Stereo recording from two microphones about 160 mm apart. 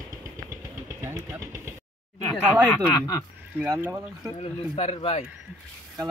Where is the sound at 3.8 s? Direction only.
20° right (ahead or behind).